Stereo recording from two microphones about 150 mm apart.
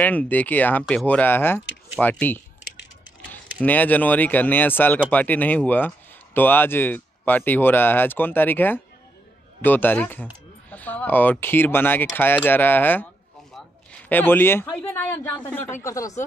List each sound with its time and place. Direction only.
0.0 s speech: 10° left (ahead or behind)
3.6 s speech: 10° left (ahead or behind)